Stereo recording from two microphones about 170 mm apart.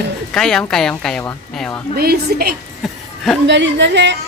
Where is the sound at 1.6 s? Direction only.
10° left (ahead or behind).